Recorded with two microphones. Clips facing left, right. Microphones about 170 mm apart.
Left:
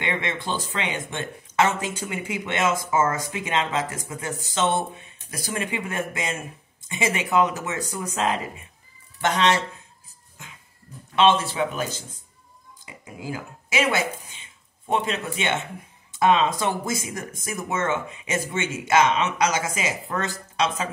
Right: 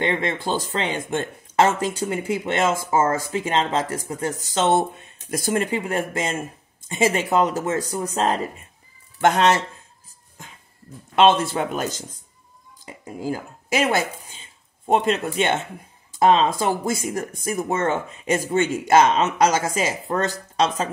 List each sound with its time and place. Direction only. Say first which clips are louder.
0.0 s speech: right 5 dB; 35° right (ahead or behind)
9.2 s speech: right 4 dB; 50° right (ahead or behind)
11.1 s speech: right 3 dB; 45° right (ahead or behind)
12.8 s speech: right 6 dB; 40° right (ahead or behind)
17.5 s speech: right 6 dB; 50° right (ahead or behind)
17.7 s speech: right 3 dB; 35° right (ahead or behind)